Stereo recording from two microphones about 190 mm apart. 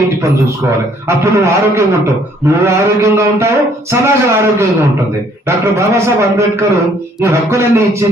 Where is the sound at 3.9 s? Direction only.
15° right (ahead or behind).